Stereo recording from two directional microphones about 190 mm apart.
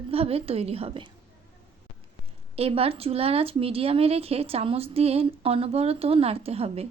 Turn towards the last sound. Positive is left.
turn(degrees=-30)  # may be behind; listen again after turning